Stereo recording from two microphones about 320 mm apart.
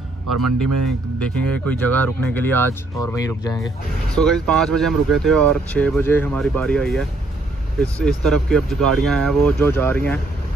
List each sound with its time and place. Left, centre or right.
0.3 s speech: right
0.8 s speech: centre